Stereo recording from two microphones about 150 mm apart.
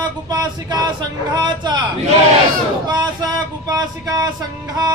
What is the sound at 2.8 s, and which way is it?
Speech, 30° right (ahead or behind).